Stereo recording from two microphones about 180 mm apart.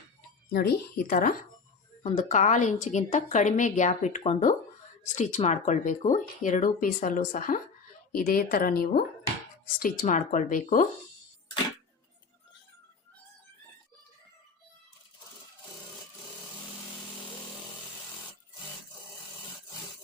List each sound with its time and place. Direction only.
0.5 s a woman's voice: 60° left (ahead or behind); by 10.8 s 45° left (ahead or behind)